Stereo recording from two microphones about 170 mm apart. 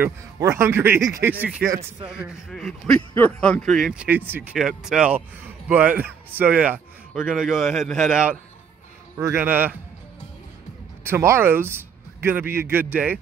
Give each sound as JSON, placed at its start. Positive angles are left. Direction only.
{"t": 0.0, "sound": "a man's voice", "side_deg": -15}
{"t": 2.0, "sound": "a man's voice", "side_deg": -5}
{"t": 2.5, "sound": "a man's voice", "side_deg": 5}
{"t": 11.1, "sound": "a man's voice", "side_deg": -15}